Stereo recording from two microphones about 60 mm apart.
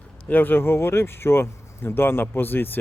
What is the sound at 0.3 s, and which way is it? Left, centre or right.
Speech, left.